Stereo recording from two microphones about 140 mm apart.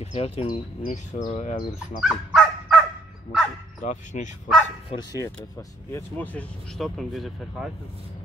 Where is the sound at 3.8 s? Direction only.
60° left (ahead or behind).